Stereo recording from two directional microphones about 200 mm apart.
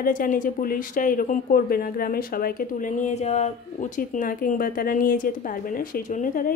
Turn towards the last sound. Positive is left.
turn(degrees=40)  # may be behind; listen again after turning